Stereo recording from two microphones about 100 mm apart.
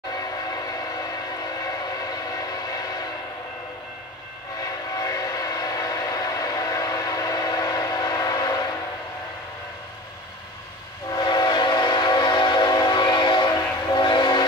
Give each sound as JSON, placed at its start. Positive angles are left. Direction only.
{"t": 0.1, "sound": "train", "side_deg": 40}
{"t": 4.6, "sound": "train", "side_deg": 40}
{"t": 11.1, "sound": "train", "side_deg": 45}